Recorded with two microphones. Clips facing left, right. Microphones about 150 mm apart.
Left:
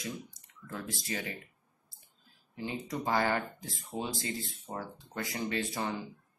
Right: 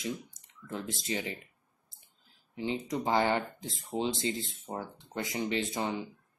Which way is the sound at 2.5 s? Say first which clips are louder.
Right 4 dB; 20° right (ahead or behind).